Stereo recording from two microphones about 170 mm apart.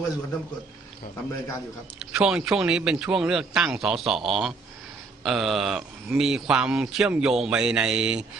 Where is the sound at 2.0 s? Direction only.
5° right (ahead or behind).